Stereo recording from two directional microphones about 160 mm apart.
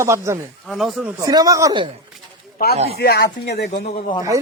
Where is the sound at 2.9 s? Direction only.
75° left (ahead or behind).